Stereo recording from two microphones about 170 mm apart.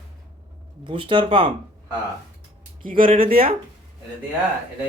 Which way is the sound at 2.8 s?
55° right (ahead or behind).